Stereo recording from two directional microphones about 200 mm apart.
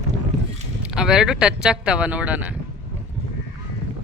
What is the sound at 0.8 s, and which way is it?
Speech, 5° right (ahead or behind).